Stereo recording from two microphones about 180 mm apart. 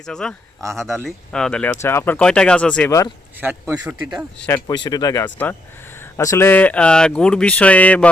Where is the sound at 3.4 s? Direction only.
10° right (ahead or behind).